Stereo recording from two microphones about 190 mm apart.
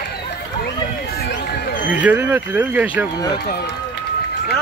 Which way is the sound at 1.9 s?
10° right (ahead or behind).